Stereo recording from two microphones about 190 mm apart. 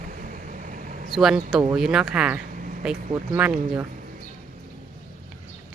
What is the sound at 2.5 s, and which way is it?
Vehicle, 45° right (ahead or behind).